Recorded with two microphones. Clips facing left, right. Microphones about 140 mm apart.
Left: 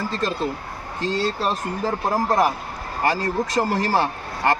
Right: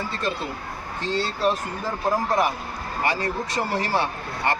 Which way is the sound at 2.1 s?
40° left (ahead or behind).